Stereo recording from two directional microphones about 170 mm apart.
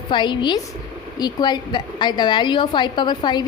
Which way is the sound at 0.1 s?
25° left (ahead or behind).